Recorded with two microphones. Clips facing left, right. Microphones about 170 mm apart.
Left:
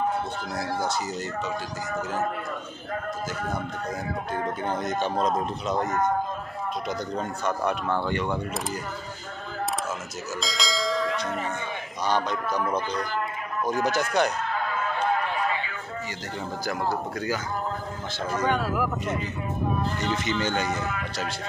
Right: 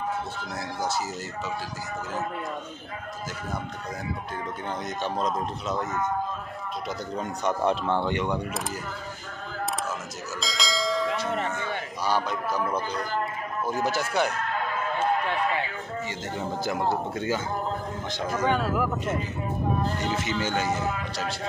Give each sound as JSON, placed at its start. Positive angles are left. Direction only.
{"t": 4.8, "sound": "a man's voice", "side_deg": 0}
{"t": 7.4, "sound": "speech", "side_deg": -25}
{"t": 10.4, "sound": "church bell", "side_deg": 0}
{"t": 12.1, "sound": "a man's voice", "side_deg": -5}
{"t": 16.6, "sound": "speech", "side_deg": -25}
{"t": 18.2, "sound": "a man's voice", "side_deg": -5}
{"t": 20.0, "sound": "a man's voice", "side_deg": -10}